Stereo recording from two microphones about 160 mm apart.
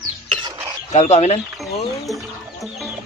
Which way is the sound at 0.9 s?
45° left (ahead or behind).